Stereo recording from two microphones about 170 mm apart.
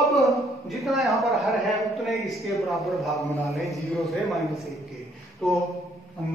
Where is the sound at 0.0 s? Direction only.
Centre (ahead or behind).